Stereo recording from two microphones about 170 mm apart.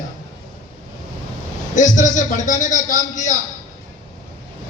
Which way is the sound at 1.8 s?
45° left (ahead or behind).